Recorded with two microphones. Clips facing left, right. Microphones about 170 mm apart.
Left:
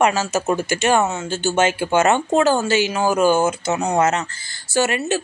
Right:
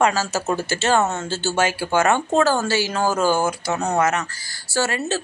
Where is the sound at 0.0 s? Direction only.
20° left (ahead or behind).